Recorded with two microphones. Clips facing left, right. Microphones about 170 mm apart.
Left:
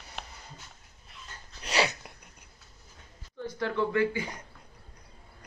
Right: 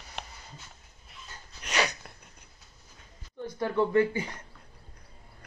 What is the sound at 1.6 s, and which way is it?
Dog, 30° left (ahead or behind).